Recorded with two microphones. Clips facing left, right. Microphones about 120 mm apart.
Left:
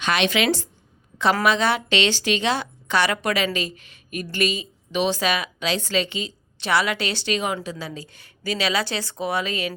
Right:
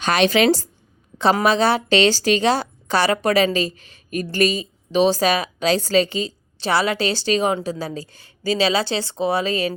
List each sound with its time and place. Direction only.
0.0 s a woman's voice: 40° right (ahead or behind)